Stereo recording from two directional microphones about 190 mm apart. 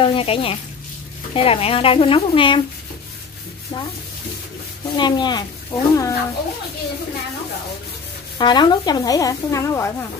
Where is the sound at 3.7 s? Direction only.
25° left (ahead or behind).